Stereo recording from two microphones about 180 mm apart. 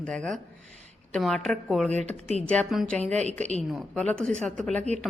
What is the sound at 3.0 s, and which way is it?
Speech, 40° right (ahead or behind).